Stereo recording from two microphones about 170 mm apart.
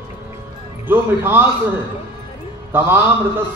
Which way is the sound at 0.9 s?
10° right (ahead or behind).